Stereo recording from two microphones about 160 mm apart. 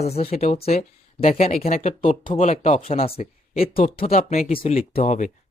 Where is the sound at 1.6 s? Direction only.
55° left (ahead or behind).